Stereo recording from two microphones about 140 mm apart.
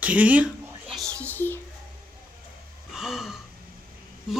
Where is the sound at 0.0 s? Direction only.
10° right (ahead or behind); by 1.6 s 15° left (ahead or behind).